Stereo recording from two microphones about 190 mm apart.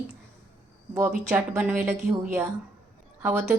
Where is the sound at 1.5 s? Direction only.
10° right (ahead or behind).